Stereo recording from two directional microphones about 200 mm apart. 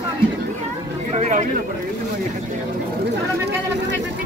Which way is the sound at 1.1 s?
35° right (ahead or behind).